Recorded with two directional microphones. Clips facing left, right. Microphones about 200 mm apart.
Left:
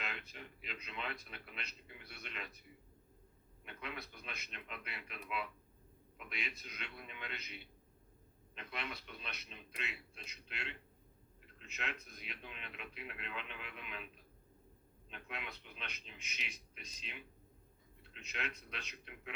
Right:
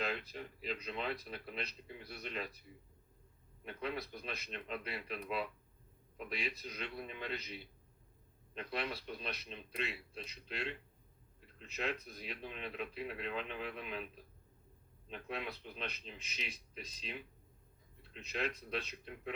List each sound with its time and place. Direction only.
0.0 s speech: 35° right (ahead or behind)
3.6 s speech: 35° right (ahead or behind)
15.1 s speech: 35° right (ahead or behind)